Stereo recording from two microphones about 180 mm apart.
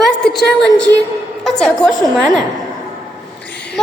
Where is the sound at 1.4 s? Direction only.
Centre (ahead or behind).